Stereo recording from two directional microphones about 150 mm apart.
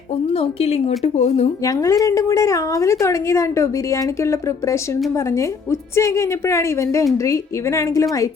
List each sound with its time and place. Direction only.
0.3 s a woman's voice: 40° left (ahead or behind)
1.6 s a woman's voice: 25° left (ahead or behind)